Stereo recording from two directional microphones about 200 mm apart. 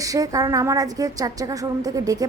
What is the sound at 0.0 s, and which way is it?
A woman's voice, 15° right (ahead or behind).